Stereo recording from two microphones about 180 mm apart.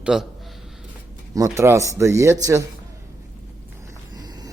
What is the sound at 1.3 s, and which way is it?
A man's voice, 15° right (ahead or behind).